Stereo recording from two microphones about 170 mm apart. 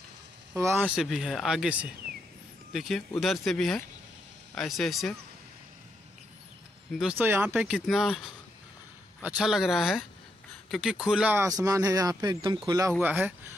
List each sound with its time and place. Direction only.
0.6 s speech: 15° right (ahead or behind)
0.8 s speech: centre (ahead or behind)
6.9 s speech: 5° right (ahead or behind); by 12.9 s 20° right (ahead or behind)
13.0 s speech: 10° right (ahead or behind)